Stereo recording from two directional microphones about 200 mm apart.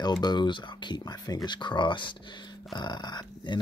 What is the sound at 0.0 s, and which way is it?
Speech, 20° left (ahead or behind).